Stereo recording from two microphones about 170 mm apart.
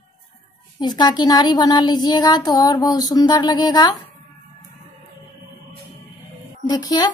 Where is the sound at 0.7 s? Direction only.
25° left (ahead or behind).